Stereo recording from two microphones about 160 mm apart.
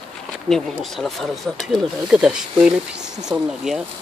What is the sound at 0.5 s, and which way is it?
Speech, centre (ahead or behind).